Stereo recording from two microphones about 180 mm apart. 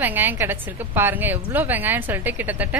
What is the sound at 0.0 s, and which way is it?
A woman's voice, 10° right (ahead or behind).